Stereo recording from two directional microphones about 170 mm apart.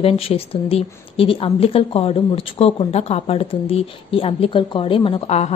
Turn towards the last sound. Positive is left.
turn(degrees=40)  # may be behind; listen again after turning